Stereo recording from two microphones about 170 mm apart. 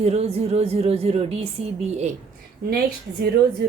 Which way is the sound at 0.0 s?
40° right (ahead or behind).